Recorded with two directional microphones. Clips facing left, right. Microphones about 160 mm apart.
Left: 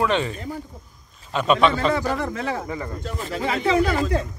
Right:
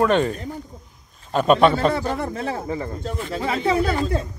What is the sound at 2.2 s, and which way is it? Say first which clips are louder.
Speech: right 1 dB; 30° right (ahead or behind).